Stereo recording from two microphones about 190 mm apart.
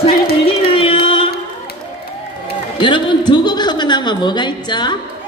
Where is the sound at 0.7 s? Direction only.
30° left (ahead or behind).